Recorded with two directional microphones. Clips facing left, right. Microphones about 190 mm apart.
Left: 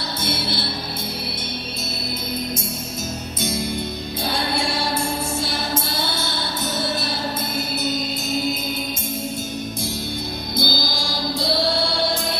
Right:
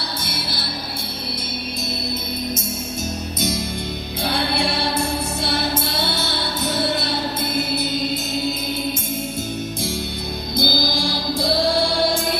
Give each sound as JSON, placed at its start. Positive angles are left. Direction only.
{"t": 0.3, "sound": "music", "side_deg": 25}
{"t": 4.3, "sound": "music", "side_deg": -60}
{"t": 10.6, "sound": "music", "side_deg": -55}